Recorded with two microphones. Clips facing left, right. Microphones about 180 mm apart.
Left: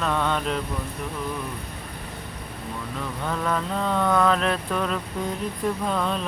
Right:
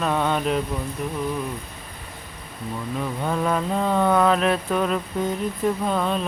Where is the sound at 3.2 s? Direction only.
20° right (ahead or behind).